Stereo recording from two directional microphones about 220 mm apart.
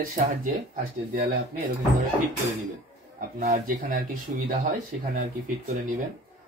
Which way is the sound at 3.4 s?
40° right (ahead or behind).